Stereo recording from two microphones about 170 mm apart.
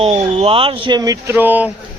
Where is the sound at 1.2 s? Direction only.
10° right (ahead or behind).